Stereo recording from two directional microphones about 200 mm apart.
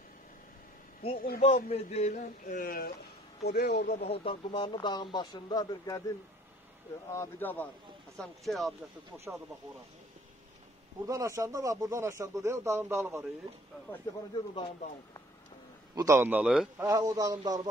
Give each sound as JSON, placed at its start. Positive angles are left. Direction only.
{"t": 1.1, "sound": "speech", "side_deg": 50}
{"t": 1.4, "sound": "a man's voice", "side_deg": 30}
{"t": 4.1, "sound": "speech", "side_deg": 30}
{"t": 7.1, "sound": "speech", "side_deg": 10}
{"t": 11.1, "sound": "speech", "side_deg": -15}
{"t": 14.3, "sound": "speech", "side_deg": 25}
{"t": 15.9, "sound": "speech", "side_deg": -15}
{"t": 16.8, "sound": "speech", "side_deg": -20}